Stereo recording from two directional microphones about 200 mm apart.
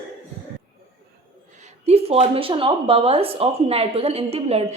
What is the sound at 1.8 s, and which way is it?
Speech, 30° right (ahead or behind).